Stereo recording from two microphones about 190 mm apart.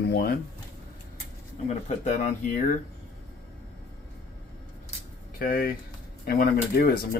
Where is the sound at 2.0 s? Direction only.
40° left (ahead or behind).